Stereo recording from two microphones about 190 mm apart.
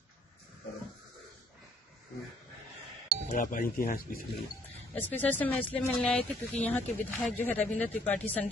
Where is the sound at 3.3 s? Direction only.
45° left (ahead or behind).